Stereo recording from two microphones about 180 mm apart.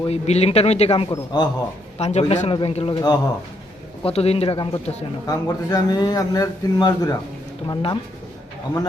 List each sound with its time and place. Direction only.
0.1 s a man's voice: 35° left (ahead or behind)
2.0 s a man's voice: 35° left (ahead or behind)
4.0 s a man's voice: 35° left (ahead or behind)